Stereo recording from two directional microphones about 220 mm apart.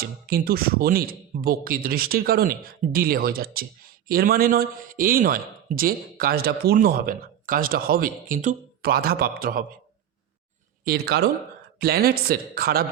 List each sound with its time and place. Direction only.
0.0 s speech: 45° right (ahead or behind)
10.8 s speech: 45° right (ahead or behind)